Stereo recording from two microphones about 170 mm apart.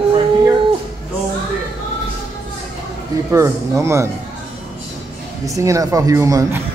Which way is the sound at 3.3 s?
15° right (ahead or behind).